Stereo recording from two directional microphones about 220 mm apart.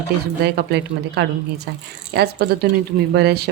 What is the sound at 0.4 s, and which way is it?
Speech, 50° right (ahead or behind).